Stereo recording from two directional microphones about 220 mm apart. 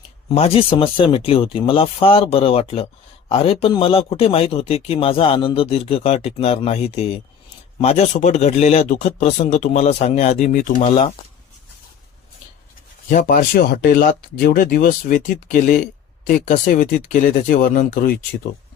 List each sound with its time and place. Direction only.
0.3 s speech: 25° left (ahead or behind)
13.1 s speech: 40° left (ahead or behind)